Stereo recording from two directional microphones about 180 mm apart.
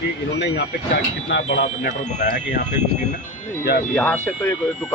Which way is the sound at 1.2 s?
85° left.